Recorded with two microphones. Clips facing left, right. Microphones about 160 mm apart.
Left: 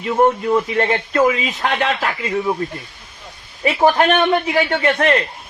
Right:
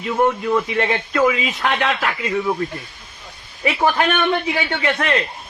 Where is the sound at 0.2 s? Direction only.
30° left (ahead or behind).